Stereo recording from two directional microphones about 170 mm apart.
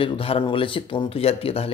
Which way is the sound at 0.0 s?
30° left (ahead or behind).